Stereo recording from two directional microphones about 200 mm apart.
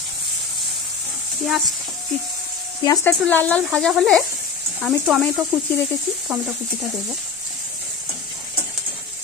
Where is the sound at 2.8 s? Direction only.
20° left (ahead or behind).